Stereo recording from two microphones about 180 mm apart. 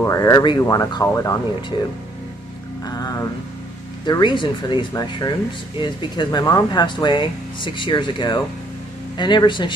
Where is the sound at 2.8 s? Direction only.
20° left (ahead or behind).